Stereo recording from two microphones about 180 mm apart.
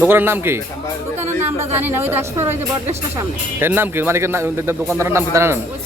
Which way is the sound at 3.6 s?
10° right (ahead or behind).